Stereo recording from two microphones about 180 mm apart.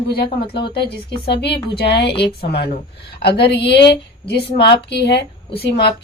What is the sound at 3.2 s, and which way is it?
A woman's voice, 65° left (ahead or behind).